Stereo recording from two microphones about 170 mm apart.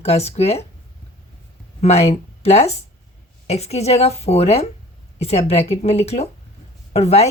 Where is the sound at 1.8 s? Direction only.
40° left (ahead or behind).